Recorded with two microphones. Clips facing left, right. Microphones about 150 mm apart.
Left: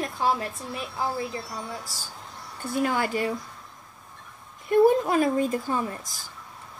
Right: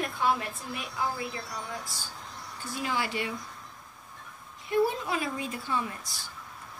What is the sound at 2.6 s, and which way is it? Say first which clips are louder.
Speech: left 7 dB; 55° left (ahead or behind).